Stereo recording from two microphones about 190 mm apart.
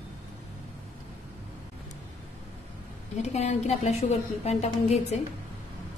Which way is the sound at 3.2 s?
35° left (ahead or behind).